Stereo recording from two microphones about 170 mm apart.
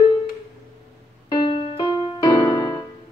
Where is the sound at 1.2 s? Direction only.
30° left (ahead or behind).